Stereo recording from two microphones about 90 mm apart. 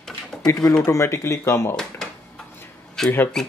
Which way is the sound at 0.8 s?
35° left (ahead or behind).